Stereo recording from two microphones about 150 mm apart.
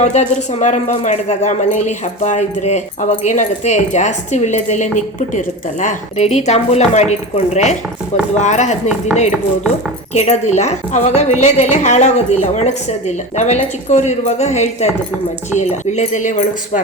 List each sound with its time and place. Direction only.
0.0 s speech: 50° left (ahead or behind)
10.2 s speech: 50° left (ahead or behind)